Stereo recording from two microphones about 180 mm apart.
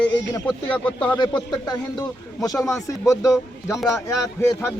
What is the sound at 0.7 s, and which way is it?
Speech, 10° left (ahead or behind).